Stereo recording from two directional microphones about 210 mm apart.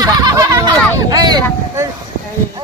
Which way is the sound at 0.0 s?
15° right (ahead or behind).